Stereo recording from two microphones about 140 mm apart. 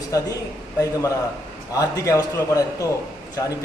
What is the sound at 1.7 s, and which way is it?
A man's voice, 25° left (ahead or behind).